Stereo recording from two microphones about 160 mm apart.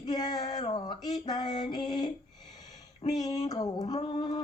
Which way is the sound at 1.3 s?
25° left (ahead or behind).